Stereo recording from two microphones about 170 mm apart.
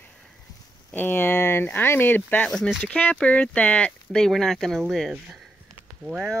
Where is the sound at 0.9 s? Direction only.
10° left (ahead or behind).